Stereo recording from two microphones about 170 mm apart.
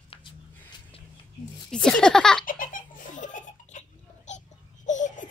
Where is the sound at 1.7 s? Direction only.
5° left (ahead or behind).